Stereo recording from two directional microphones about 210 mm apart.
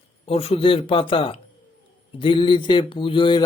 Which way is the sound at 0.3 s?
30° left (ahead or behind).